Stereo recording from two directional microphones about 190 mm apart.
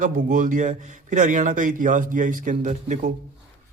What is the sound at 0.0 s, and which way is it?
A man's voice, 45° right (ahead or behind).